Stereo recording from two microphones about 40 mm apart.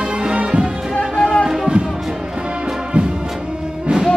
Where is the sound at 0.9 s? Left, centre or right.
Left.